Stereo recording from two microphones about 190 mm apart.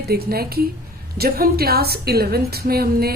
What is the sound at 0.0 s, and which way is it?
A woman's voice, 55° right (ahead or behind).